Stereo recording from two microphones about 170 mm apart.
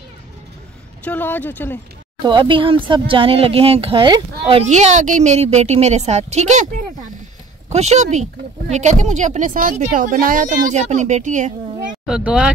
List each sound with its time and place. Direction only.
1.0 s speech: 10° left (ahead or behind)
2.2 s speech: 30° right (ahead or behind)
4.6 s speech: 45° right (ahead or behind)
7.7 s speech: 40° right (ahead or behind)
12.1 s speech: 5° right (ahead or behind)